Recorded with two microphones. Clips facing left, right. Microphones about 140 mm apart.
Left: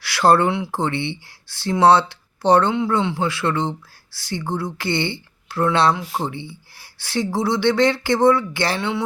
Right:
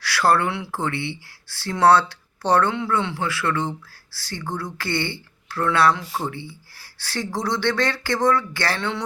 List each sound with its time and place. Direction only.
0.0 s speech: 20° left (ahead or behind)